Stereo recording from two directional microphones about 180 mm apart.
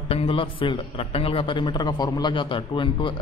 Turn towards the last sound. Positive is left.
turn(degrees=25)  # may be behind; listen again after turning